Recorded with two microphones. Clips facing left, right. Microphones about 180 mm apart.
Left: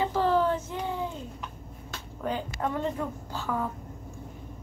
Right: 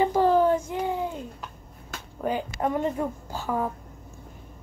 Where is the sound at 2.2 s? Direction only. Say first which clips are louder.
Right 4 dB; 15° right (ahead or behind).